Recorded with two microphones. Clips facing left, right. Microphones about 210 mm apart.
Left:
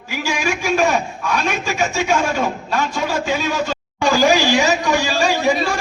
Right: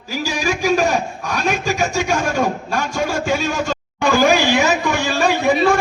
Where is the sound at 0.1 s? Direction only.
40° right (ahead or behind).